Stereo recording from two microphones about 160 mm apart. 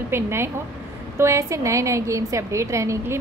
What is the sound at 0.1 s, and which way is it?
A woman's voice, 15° right (ahead or behind).